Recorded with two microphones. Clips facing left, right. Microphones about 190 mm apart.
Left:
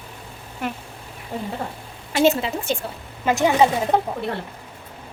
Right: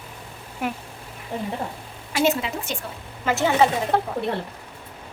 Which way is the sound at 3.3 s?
15° left (ahead or behind).